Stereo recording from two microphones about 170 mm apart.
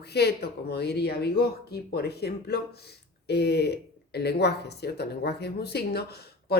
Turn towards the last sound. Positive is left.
turn(degrees=70)  # may be behind; listen again after turning